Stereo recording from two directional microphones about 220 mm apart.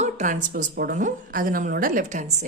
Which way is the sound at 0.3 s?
45° right (ahead or behind).